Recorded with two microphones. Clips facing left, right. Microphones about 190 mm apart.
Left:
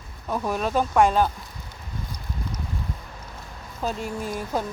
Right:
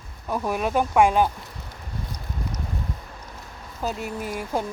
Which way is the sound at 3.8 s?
5° right (ahead or behind).